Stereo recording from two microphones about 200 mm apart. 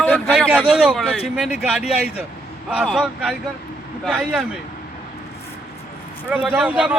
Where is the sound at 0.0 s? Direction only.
10° left (ahead or behind).